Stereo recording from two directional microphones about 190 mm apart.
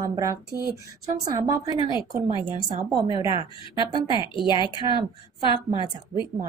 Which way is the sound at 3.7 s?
25° left (ahead or behind).